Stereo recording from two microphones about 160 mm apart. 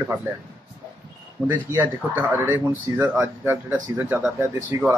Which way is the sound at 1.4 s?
10° right (ahead or behind).